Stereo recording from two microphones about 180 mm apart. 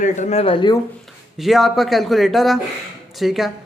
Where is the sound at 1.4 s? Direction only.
Centre (ahead or behind).